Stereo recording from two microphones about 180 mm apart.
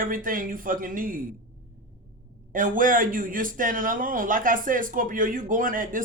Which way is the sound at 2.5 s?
50° right (ahead or behind).